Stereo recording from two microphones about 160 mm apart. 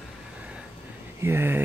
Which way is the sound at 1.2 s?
15° right (ahead or behind).